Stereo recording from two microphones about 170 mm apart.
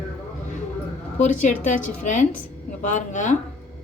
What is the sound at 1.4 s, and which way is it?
A woman's voice, 50° left (ahead or behind).